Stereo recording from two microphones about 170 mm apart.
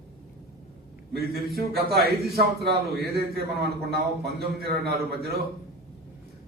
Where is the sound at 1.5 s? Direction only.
65° right (ahead or behind).